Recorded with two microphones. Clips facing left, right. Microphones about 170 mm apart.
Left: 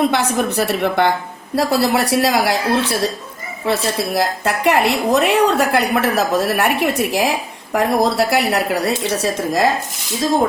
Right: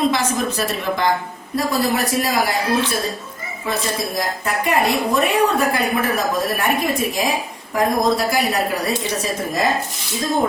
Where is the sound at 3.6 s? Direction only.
75° left (ahead or behind).